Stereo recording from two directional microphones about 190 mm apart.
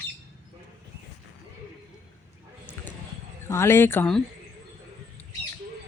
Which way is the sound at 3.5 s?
15° left (ahead or behind).